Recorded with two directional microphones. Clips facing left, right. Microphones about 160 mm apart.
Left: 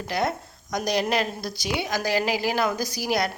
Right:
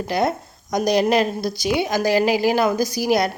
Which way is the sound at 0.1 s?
20° right (ahead or behind).